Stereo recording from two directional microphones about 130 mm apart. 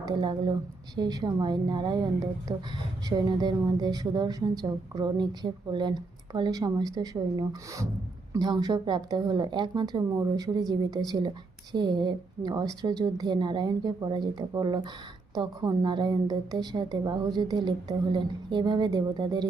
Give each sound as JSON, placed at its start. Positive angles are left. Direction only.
{"t": 0.0, "sound": "a woman's voice", "side_deg": -35}